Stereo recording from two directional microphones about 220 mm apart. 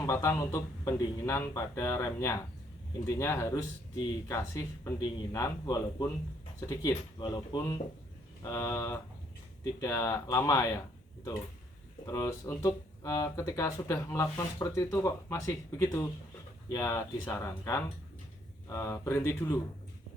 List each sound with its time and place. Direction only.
0.0 s speech: 15° left (ahead or behind)
12.0 s speech: 15° left (ahead or behind)